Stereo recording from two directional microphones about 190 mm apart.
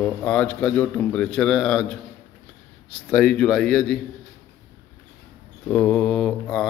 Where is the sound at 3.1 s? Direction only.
5° left (ahead or behind).